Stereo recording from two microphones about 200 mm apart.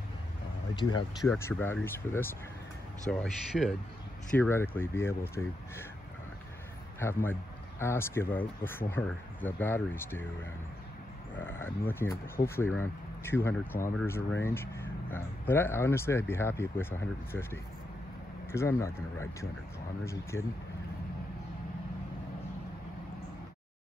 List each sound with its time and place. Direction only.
0.7 s speech: 20° left (ahead or behind)
7.8 s speech: 10° left (ahead or behind)
11.3 s speech: 10° left (ahead or behind)